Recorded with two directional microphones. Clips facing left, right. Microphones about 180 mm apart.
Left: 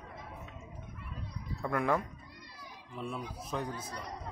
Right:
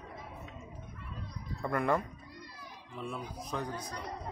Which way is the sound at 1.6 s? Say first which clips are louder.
Even; centre (ahead or behind).